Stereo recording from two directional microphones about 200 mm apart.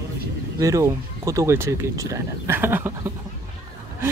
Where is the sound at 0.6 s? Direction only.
15° right (ahead or behind).